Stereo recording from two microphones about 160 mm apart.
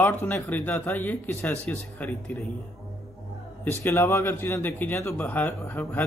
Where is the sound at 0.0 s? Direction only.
15° left (ahead or behind).